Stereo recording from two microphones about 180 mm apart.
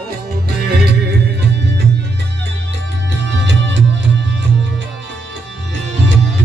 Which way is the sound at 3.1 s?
90° right.